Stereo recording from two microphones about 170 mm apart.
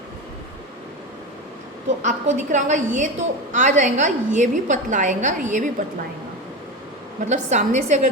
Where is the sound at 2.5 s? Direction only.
45° right (ahead or behind).